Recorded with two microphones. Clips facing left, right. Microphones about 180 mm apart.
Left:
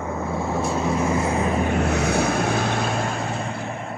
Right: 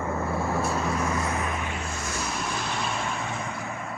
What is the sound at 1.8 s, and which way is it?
Vehicle, 70° left (ahead or behind).